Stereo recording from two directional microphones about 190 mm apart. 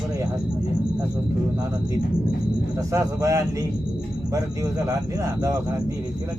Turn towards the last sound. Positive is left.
turn(degrees=-15)  # may be behind; listen again after turning